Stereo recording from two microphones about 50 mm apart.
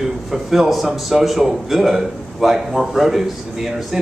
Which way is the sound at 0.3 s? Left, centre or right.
Centre.